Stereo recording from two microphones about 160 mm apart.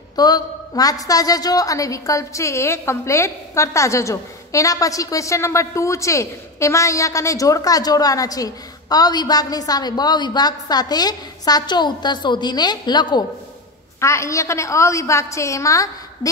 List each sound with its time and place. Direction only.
0.1 s a woman's voice: 25° left (ahead or behind)